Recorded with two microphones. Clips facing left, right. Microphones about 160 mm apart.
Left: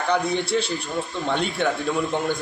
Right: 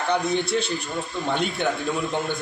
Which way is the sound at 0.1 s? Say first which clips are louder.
Left 1 dB; centre (ahead or behind).